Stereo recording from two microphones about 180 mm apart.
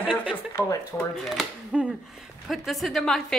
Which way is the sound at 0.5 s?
15° left (ahead or behind).